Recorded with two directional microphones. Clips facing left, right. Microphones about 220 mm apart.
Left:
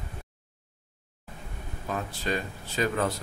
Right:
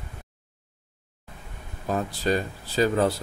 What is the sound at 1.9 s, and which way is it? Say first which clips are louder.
Speech: right 6 dB; 35° right (ahead or behind).